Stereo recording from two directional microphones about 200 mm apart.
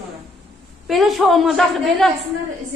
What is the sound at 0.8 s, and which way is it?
A woman's voice, centre (ahead or behind).